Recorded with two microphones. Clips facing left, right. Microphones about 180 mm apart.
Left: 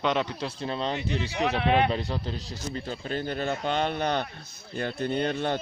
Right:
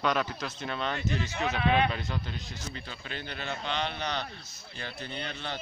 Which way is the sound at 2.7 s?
40° left (ahead or behind).